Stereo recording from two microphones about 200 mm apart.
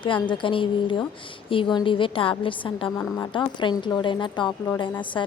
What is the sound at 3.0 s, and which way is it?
Speech, 10° left (ahead or behind).